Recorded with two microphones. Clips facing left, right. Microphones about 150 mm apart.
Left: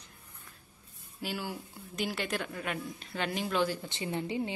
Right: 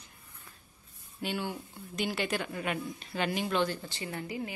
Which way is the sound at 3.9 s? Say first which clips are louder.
Left 4 dB; 20° left (ahead or behind).